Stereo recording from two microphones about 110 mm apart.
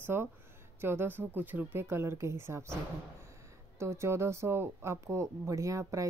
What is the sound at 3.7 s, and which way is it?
Speech, 25° right (ahead or behind).